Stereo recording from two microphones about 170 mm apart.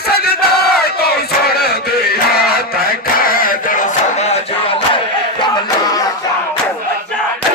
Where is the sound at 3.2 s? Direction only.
55° left (ahead or behind); by 4.7 s 35° left (ahead or behind).